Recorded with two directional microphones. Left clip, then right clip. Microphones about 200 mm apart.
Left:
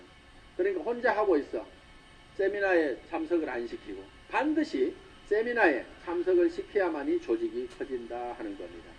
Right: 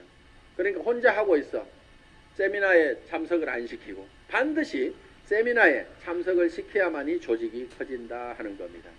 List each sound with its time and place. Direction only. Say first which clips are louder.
0.5 s speech: right 3 dB; 40° right (ahead or behind)
2.4 s speech: right 5 dB; 40° right (ahead or behind)